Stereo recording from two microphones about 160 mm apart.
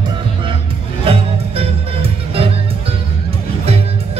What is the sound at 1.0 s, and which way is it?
Music, 35° right (ahead or behind).